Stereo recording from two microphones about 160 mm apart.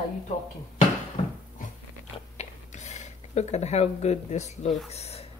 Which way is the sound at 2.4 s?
45° left (ahead or behind).